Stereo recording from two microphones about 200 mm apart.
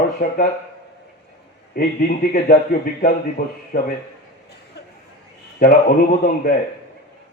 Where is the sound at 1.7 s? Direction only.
45° left (ahead or behind).